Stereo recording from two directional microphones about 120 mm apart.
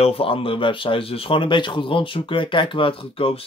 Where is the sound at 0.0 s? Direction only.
50° left (ahead or behind).